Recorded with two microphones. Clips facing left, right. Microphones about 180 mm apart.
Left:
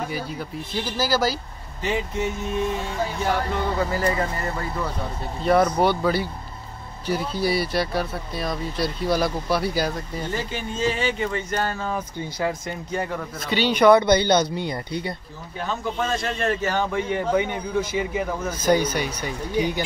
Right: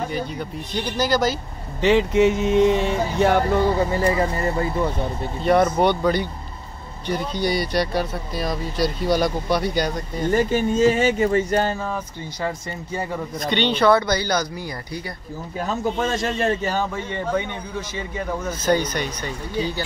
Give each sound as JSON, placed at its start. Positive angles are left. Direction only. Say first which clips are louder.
{"t": 0.1, "sound": "speech", "louder": "right 3 dB", "side_deg": 5}
{"t": 1.8, "sound": "speech", "louder": "right 9 dB", "side_deg": -85}
{"t": 3.5, "sound": "speech", "louder": "right 5 dB", "side_deg": -30}
{"t": 5.4, "sound": "speech", "louder": "right 1 dB", "side_deg": 0}
{"t": 10.3, "sound": "speech", "louder": "right 13 dB", "side_deg": -45}
{"t": 11.8, "sound": "speech", "louder": "even", "side_deg": 5}
{"t": 15.6, "sound": "speech", "louder": "right 3 dB", "side_deg": -40}
{"t": 16.9, "sound": "speech", "louder": "left 2 dB", "side_deg": 10}